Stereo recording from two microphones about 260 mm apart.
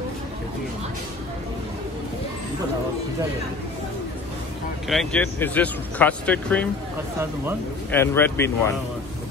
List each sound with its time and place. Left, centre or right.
4.8 s speech: centre
7.9 s speech: centre